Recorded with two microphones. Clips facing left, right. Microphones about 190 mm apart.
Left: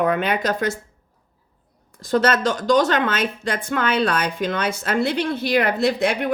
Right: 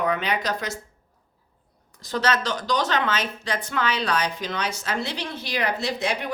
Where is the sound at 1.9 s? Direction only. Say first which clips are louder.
Left 6 dB; 50° left (ahead or behind).